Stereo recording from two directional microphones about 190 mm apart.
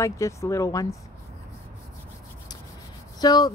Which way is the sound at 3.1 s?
20° left (ahead or behind).